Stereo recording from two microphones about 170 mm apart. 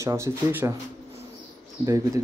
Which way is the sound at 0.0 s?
15° right (ahead or behind).